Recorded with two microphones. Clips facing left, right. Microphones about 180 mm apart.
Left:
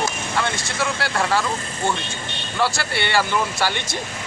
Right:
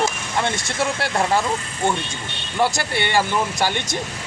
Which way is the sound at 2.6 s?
20° right (ahead or behind).